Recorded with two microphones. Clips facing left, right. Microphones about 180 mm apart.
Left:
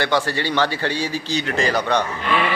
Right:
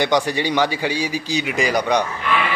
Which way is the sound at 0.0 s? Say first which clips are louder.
Right 2 dB; 15° right (ahead or behind).